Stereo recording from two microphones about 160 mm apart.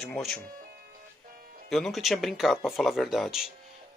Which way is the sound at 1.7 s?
Centre (ahead or behind).